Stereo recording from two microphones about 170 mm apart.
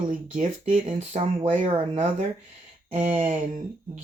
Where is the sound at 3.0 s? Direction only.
40° right (ahead or behind).